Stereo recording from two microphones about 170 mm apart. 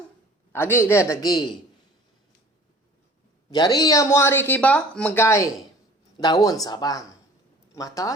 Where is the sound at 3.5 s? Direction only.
25° left (ahead or behind).